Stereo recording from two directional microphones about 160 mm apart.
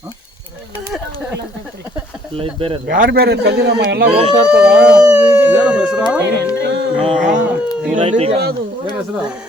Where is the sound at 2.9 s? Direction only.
70° right (ahead or behind); by 4.0 s 85° right.